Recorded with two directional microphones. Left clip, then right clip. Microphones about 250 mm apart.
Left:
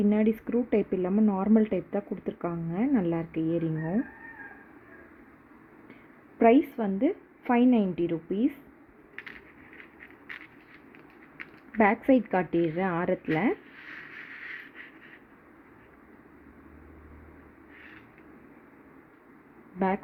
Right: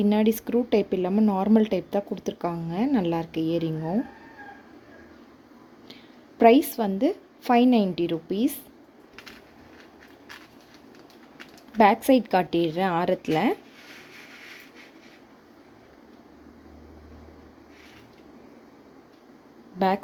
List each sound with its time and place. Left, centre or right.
0.0 s speech: centre
6.4 s speech: centre
11.8 s speech: centre